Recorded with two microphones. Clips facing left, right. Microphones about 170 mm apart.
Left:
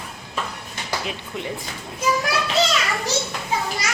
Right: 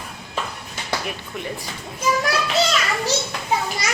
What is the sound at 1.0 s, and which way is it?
Speech, 20° left (ahead or behind).